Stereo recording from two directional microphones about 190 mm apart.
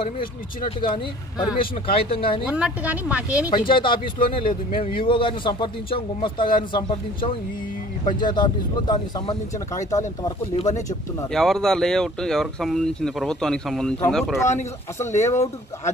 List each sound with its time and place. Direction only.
0.7 s a man's voice: 25° left (ahead or behind)
2.4 s a woman's voice: 5° right (ahead or behind)
3.4 s a man's voice: 25° left (ahead or behind)
10.5 s speech: 35° left (ahead or behind)
11.3 s speech: centre (ahead or behind)
14.4 s speech: 15° left (ahead or behind)